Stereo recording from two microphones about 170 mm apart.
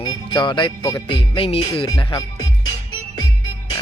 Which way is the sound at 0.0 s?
30° left (ahead or behind).